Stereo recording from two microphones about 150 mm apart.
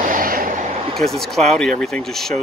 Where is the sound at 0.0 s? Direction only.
65° right (ahead or behind).